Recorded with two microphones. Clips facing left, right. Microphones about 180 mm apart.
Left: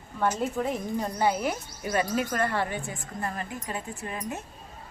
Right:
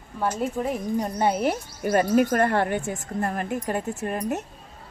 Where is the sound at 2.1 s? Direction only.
50° right (ahead or behind).